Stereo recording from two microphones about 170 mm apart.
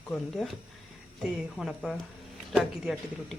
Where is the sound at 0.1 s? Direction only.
Centre (ahead or behind).